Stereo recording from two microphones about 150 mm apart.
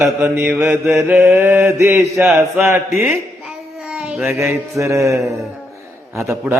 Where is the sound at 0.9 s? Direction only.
20° right (ahead or behind).